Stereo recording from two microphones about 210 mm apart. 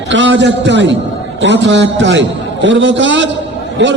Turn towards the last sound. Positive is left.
turn(degrees=-60)  # may be behind; listen again after turning